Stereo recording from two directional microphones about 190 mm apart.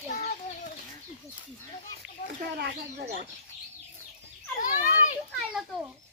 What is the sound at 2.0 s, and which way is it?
Speech, 5° right (ahead or behind).